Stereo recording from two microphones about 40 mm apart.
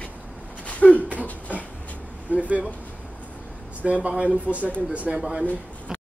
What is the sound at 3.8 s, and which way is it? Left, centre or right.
Speech, right.